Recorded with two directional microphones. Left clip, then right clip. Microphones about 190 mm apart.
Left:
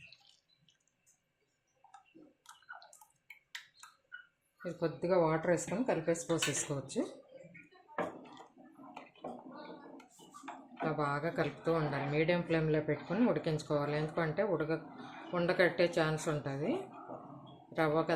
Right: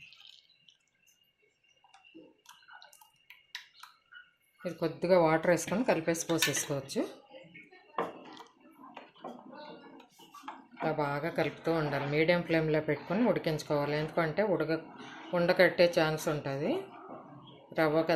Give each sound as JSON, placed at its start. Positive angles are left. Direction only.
{"t": 4.6, "sound": "a woman's voice", "side_deg": -15}
{"t": 10.8, "sound": "a woman's voice", "side_deg": -10}
{"t": 17.7, "sound": "a woman's voice", "side_deg": -10}